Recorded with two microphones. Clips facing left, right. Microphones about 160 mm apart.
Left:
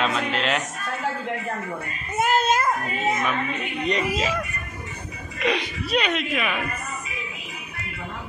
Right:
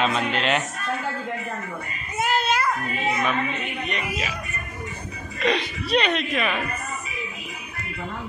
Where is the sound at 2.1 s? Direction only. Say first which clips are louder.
Left 3 dB; 45° left (ahead or behind).